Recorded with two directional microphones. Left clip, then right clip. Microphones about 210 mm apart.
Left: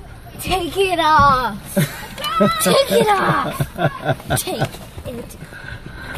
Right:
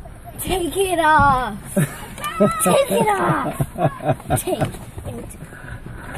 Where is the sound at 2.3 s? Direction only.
Centre (ahead or behind).